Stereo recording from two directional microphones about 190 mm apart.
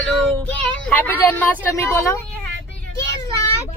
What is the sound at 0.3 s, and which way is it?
Child singing, 5° left (ahead or behind).